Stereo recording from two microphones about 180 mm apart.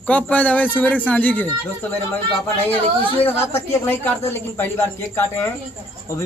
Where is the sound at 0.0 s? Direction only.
5° left (ahead or behind).